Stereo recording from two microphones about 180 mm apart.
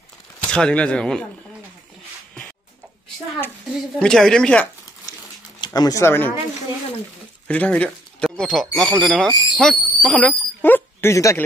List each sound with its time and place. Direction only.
0.5 s speech: 5° left (ahead or behind)
4.0 s speech: 5° left (ahead or behind)
5.6 s speech: 20° left (ahead or behind)
7.4 s speech: 5° left (ahead or behind)